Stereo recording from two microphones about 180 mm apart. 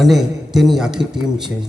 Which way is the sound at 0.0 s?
Centre (ahead or behind).